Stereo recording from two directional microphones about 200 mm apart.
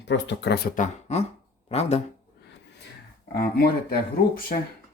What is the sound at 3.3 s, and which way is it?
Speech, 50° left (ahead or behind).